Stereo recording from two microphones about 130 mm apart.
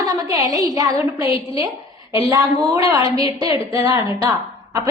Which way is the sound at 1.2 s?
40° left (ahead or behind).